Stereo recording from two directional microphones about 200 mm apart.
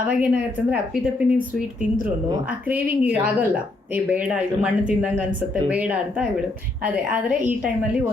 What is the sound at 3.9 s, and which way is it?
A woman's voice, 5° right (ahead or behind).